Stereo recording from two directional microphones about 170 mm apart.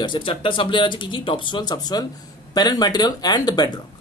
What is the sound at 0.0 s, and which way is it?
Speech, 30° left (ahead or behind).